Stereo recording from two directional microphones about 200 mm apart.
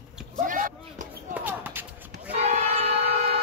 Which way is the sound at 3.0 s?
55° right (ahead or behind).